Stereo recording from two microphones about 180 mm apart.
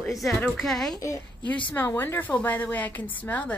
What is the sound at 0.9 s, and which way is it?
A woman's voice, 15° left (ahead or behind).